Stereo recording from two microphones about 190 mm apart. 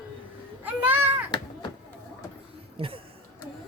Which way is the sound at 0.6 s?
10° right (ahead or behind).